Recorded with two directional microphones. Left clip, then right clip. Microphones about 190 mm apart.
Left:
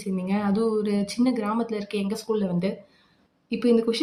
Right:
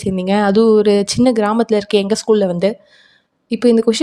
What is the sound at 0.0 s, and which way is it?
A woman's voice, 50° right (ahead or behind).